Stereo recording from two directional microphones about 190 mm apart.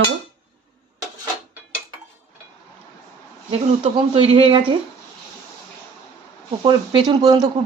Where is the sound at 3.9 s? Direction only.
25° right (ahead or behind).